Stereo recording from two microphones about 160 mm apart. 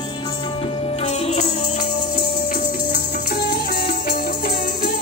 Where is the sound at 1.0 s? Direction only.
40° left (ahead or behind).